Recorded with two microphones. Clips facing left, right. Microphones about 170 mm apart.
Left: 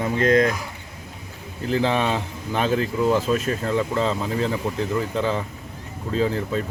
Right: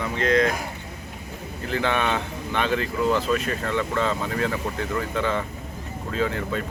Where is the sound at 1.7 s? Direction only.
30° left (ahead or behind).